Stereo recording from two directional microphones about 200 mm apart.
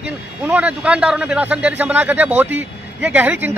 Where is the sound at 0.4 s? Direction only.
10° right (ahead or behind).